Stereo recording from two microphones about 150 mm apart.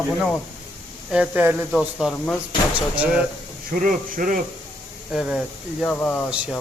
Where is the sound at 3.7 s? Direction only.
65° right (ahead or behind).